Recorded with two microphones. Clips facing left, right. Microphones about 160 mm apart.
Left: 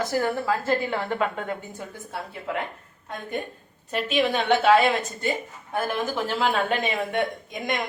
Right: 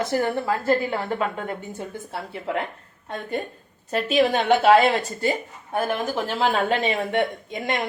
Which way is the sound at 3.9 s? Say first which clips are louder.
Right 4 dB; 40° right (ahead or behind).